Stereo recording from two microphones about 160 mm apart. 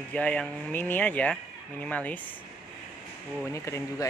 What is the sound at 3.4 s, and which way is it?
Speech, 20° left (ahead or behind).